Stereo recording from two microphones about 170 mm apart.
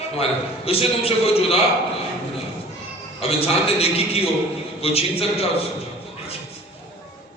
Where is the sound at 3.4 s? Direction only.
35° left (ahead or behind).